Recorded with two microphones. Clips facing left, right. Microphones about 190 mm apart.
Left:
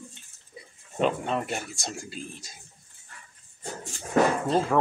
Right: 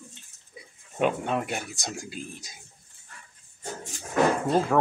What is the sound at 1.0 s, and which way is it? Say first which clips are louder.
Speech: even; 10° right (ahead or behind).